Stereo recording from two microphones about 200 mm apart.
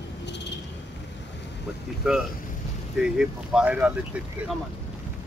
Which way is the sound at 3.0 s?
5° right (ahead or behind).